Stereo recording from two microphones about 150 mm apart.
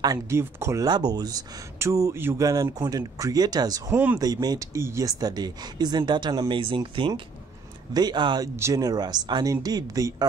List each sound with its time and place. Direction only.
0.0 s speech: 20° right (ahead or behind)
3.9 s speech: 10° right (ahead or behind)
4.2 s speech: 25° right (ahead or behind)